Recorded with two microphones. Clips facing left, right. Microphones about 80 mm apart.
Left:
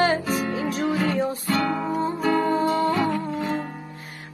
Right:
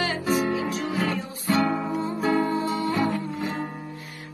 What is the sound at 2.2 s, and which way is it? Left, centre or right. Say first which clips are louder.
Music: even; centre.